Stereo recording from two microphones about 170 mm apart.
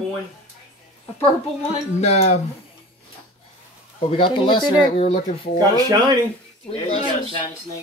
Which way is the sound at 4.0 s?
30° left (ahead or behind).